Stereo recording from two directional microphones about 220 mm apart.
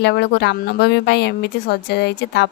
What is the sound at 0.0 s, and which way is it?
A woman's voice, 50° left (ahead or behind).